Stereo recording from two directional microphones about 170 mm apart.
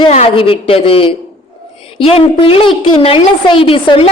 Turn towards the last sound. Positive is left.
turn(degrees=30)  # may be behind; listen again after turning